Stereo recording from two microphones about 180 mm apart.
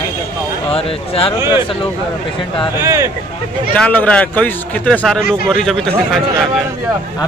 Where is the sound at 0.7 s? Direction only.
30° left (ahead or behind).